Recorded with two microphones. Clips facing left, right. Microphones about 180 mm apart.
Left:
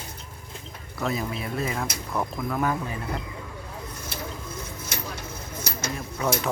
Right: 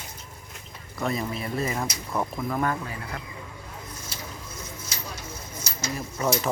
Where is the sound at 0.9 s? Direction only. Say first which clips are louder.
Even; centre (ahead or behind).